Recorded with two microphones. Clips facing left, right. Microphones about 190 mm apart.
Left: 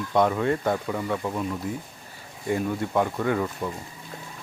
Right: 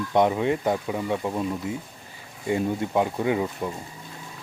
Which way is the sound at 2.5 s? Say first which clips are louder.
Right 1 dB; 20° right (ahead or behind).